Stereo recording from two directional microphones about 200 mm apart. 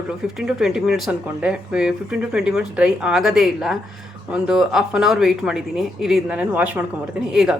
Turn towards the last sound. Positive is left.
turn(degrees=-5)  # may be behind; listen again after turning